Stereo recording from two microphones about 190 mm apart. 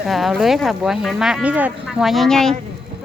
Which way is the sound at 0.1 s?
Centre (ahead or behind).